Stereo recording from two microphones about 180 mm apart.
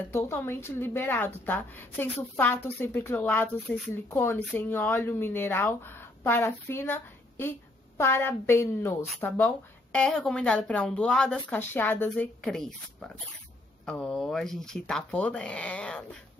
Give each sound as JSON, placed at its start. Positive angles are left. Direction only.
{"t": 0.1, "sound": "speech", "side_deg": 15}